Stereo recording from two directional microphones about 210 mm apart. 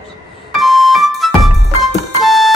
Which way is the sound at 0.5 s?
Centre (ahead or behind).